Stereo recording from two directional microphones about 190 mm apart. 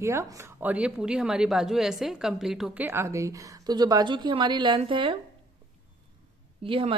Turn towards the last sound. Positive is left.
turn(degrees=-30)  # may be behind; listen again after turning